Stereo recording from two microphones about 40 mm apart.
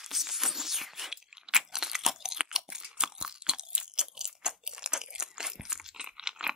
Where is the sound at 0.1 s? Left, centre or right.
Centre.